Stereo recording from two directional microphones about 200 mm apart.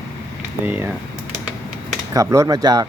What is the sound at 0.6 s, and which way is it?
Speech, 10° right (ahead or behind).